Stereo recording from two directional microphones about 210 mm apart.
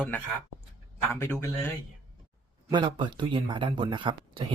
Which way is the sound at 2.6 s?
20° right (ahead or behind).